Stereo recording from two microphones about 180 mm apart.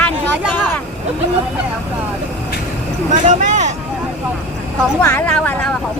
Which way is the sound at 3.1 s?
45° right (ahead or behind).